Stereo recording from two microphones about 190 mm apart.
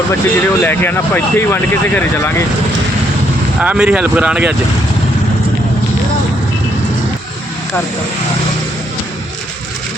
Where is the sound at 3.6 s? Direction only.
5° right (ahead or behind).